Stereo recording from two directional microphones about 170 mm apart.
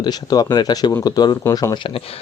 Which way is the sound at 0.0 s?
25° left (ahead or behind).